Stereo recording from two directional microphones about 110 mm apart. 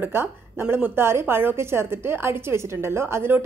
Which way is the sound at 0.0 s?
20° right (ahead or behind).